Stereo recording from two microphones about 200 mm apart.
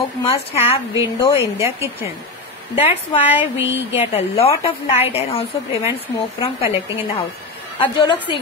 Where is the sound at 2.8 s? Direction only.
30° left (ahead or behind).